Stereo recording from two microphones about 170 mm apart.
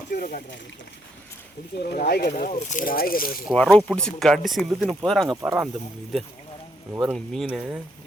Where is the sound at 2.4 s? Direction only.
45° left (ahead or behind).